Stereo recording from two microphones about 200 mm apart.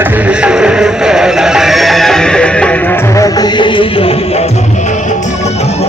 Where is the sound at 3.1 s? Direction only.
20° left (ahead or behind).